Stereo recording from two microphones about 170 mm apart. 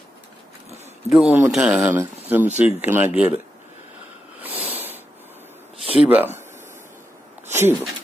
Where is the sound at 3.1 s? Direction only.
35° left (ahead or behind).